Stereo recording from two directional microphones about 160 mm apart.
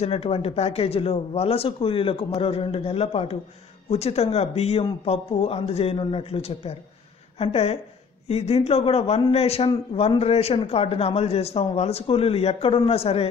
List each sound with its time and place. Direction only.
0.0 s speech: 40° left (ahead or behind)